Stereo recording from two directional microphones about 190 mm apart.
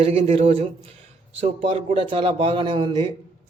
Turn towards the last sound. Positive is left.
turn(degrees=-25)  # may be behind; listen again after turning